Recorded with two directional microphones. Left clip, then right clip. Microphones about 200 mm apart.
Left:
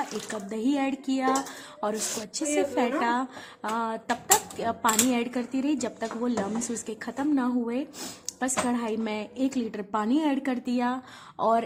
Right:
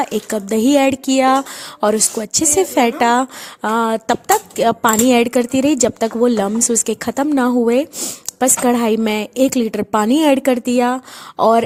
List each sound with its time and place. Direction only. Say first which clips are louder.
0.0 s a woman's voice: right 13 dB; 45° right (ahead or behind)